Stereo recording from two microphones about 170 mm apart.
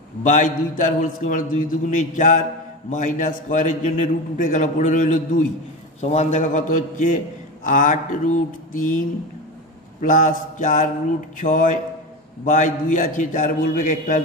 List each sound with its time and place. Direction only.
0.2 s a man's voice: 50° left (ahead or behind)